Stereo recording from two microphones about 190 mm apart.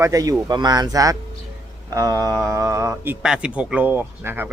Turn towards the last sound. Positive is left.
turn(degrees=-10)  # may be behind; listen again after turning